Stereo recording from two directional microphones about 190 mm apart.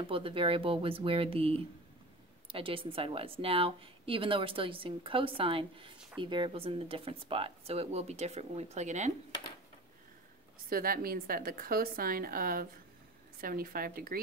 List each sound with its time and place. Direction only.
0.0 s a woman's voice: 30° right (ahead or behind)
10.7 s a woman's voice: 50° right (ahead or behind)